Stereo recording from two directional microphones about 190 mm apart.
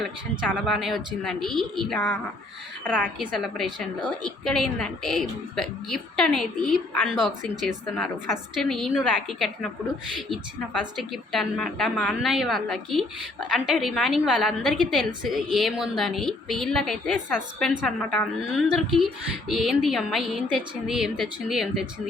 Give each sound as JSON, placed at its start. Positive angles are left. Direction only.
{"t": 0.6, "sound": "a woman's voice", "side_deg": 0}